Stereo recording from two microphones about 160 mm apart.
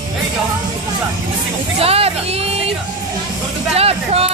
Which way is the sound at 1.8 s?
40° right (ahead or behind).